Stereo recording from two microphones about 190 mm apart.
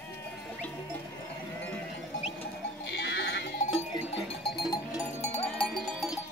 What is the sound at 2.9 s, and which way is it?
Sheep, 65° left (ahead or behind).